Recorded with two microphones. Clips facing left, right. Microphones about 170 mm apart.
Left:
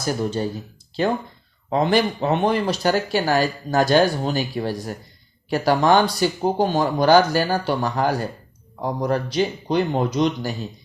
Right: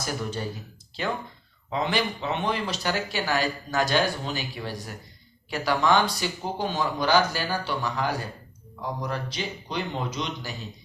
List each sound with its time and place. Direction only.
0.2 s speech: 30° left (ahead or behind)
1.7 s speech: 45° left (ahead or behind)